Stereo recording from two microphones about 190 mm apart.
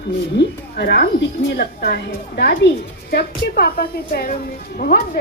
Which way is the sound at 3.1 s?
55° left (ahead or behind).